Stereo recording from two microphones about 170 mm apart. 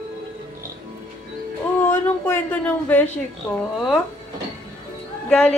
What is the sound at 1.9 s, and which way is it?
A woman's voice, 15° left (ahead or behind).